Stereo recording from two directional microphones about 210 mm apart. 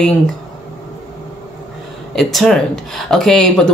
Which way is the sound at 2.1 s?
Centre (ahead or behind).